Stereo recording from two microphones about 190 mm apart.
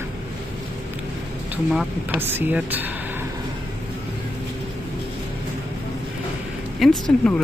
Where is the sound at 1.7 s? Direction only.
Centre (ahead or behind).